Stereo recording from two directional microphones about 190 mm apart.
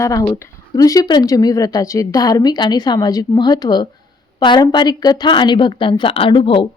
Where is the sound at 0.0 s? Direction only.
20° left (ahead or behind).